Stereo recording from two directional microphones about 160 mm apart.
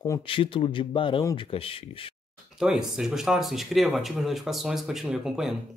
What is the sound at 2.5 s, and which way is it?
Speech, 5° right (ahead or behind).